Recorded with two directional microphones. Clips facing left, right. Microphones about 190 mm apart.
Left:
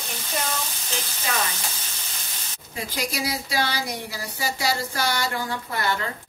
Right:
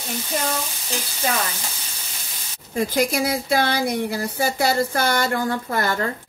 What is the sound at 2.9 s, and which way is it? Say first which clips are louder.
Speech: right 6 dB; 50° right (ahead or behind).